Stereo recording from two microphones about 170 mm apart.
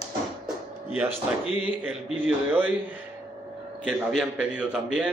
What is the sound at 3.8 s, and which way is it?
A man's voice, 5° right (ahead or behind).